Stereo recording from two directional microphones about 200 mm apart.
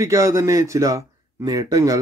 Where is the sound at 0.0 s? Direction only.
15° right (ahead or behind).